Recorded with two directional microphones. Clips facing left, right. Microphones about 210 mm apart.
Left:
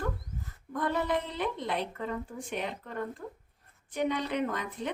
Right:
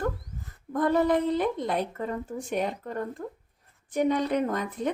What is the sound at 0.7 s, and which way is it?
Speech, 45° right (ahead or behind).